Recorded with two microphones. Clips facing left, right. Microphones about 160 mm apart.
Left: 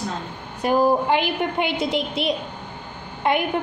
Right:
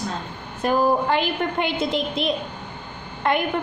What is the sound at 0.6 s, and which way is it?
A woman's voice, 15° left (ahead or behind).